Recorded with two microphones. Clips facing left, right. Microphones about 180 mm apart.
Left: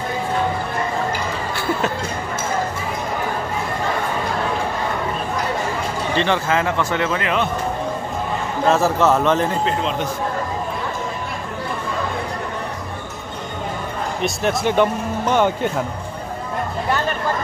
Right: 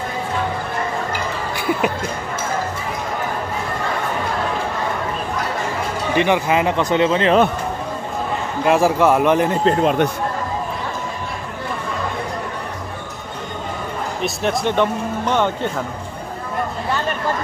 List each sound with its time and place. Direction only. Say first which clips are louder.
6.1 s speech: right 3 dB; 15° right (ahead or behind)
8.6 s speech: right 2 dB; 10° right (ahead or behind)
9.7 s speech: right 6 dB; 55° right (ahead or behind)
14.2 s speech: even; centre (ahead or behind)